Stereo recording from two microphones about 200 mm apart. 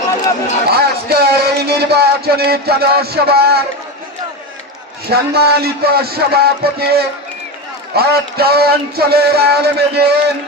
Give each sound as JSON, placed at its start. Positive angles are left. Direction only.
{"t": 0.7, "sound": "speech", "side_deg": -50}
{"t": 5.0, "sound": "speech", "side_deg": -50}